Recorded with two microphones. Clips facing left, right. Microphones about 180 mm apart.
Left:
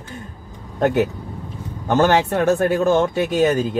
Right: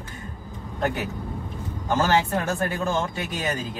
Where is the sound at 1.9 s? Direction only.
65° left (ahead or behind).